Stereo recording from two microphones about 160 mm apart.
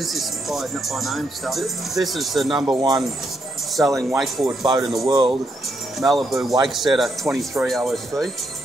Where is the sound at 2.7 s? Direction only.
25° right (ahead or behind).